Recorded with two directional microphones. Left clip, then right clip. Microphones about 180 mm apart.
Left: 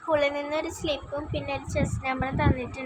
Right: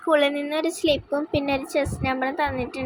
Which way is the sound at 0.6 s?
30° right (ahead or behind).